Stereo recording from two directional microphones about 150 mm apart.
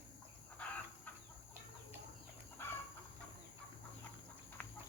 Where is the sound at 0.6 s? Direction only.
10° left (ahead or behind).